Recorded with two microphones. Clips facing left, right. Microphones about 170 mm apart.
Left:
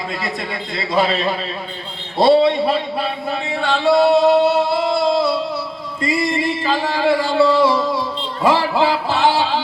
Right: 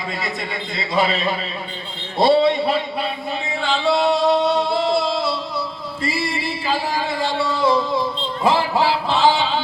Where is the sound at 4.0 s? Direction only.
Centre (ahead or behind).